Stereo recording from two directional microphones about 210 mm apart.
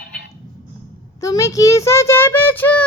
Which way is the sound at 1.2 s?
15° left (ahead or behind).